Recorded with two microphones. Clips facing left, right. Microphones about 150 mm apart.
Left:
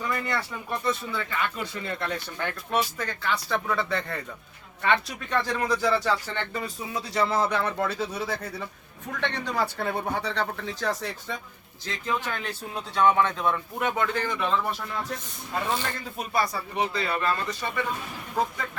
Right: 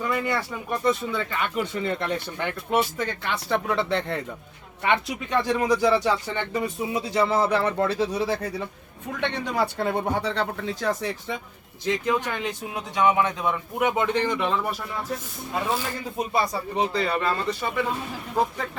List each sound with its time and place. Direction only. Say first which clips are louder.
0.1 s speech: right 3 dB; 10° right (ahead or behind); by 8.4 s 30° right (ahead or behind)
9.2 s speech: right 3 dB; 15° right (ahead or behind)
16.1 s speech: right 3 dB; 25° right (ahead or behind)